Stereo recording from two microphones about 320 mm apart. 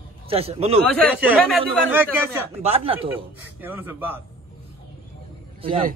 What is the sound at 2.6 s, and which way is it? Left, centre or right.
Speech, centre.